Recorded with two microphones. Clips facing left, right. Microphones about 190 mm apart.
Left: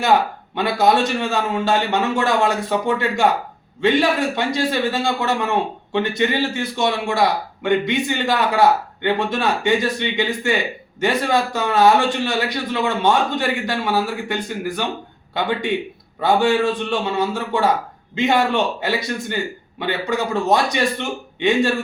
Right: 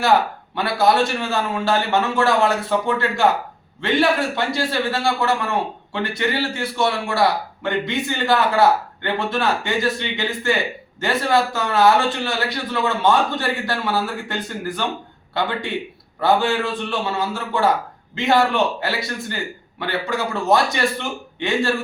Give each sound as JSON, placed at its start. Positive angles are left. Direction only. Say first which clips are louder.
{"t": 0.5, "sound": "a man's voice", "louder": "left 1 dB", "side_deg": 20}